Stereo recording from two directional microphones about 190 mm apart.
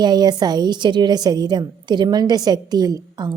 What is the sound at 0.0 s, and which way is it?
A woman's voice, 20° right (ahead or behind).